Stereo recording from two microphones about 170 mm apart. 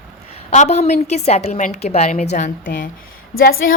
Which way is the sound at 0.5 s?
40° left (ahead or behind).